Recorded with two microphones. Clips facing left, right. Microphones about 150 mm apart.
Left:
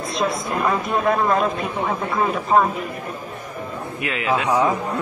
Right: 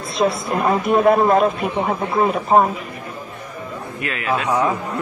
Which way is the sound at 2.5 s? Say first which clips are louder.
Right 2 dB; 25° right (ahead or behind).